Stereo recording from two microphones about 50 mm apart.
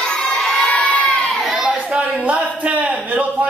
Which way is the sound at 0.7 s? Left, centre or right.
Left.